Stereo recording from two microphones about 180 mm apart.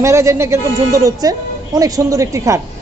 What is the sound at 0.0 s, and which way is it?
Speech, 15° right (ahead or behind).